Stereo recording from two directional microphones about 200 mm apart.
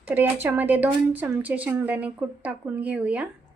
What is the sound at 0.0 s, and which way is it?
Speech, 10° right (ahead or behind).